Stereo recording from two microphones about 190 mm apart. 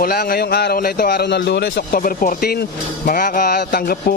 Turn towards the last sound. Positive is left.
turn(degrees=50)  # may be behind; listen again after turning